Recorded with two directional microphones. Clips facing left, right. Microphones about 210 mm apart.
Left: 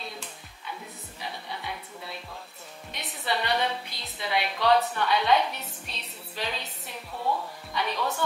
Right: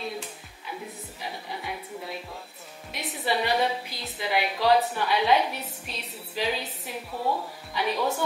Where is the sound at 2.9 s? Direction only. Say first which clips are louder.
Right 3 dB; 5° right (ahead or behind).